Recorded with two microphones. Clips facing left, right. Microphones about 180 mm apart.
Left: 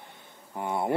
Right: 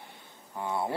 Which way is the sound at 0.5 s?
20° left (ahead or behind).